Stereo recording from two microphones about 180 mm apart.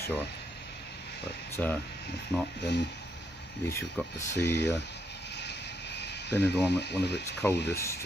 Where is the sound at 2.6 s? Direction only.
70° left (ahead or behind).